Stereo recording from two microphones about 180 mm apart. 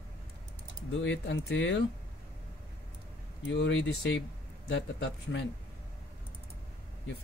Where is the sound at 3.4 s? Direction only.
85° left.